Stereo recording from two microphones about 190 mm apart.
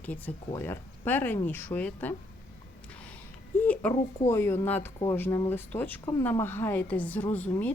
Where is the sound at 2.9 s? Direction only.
5° left (ahead or behind).